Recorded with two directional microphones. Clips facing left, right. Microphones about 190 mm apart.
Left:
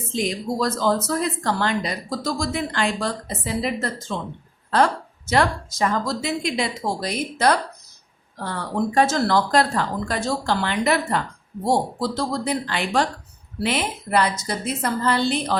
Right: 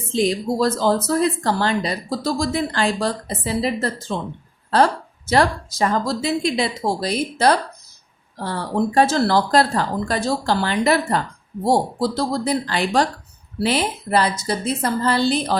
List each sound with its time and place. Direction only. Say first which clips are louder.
0.1 s speech: right 5 dB; 30° right (ahead or behind)